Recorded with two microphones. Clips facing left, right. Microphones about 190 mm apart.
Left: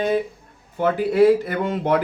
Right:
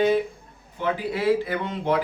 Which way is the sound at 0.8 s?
45° left (ahead or behind).